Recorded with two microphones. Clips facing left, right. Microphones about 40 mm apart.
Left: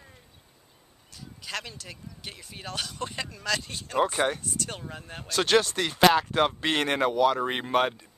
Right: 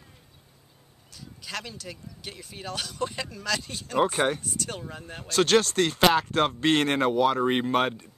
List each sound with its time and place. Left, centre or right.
1.1 s speech: centre